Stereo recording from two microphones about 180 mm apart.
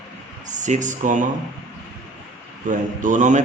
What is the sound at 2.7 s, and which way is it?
Speech, 45° right (ahead or behind).